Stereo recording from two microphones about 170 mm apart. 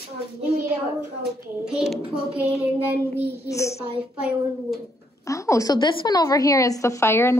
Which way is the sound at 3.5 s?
15° left (ahead or behind).